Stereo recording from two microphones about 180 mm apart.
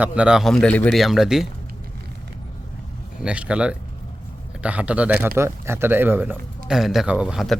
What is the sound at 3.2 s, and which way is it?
Speech, 5° right (ahead or behind).